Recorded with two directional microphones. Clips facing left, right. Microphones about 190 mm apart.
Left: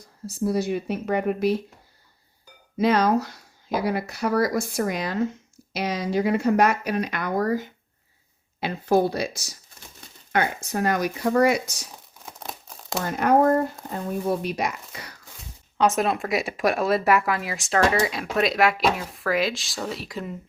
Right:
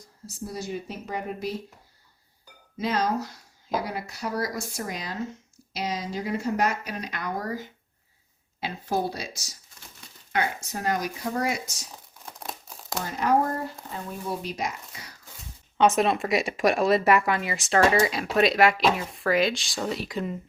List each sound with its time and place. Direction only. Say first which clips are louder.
0.3 s speech: left 9 dB; 65° left (ahead or behind)
2.7 s speech: left 6 dB; 65° left (ahead or behind)
8.6 s speech: left 7 dB; 60° left (ahead or behind)
12.2 s crumpling: left 1 dB; 5° left (ahead or behind)
13.0 s speech: left 4 dB; 55° left (ahead or behind)
15.8 s speech: right 1 dB; centre (ahead or behind)